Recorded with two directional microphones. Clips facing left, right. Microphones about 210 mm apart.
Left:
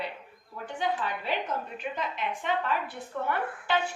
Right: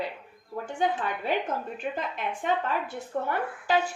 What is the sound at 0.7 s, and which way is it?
A woman's voice, 50° right (ahead or behind).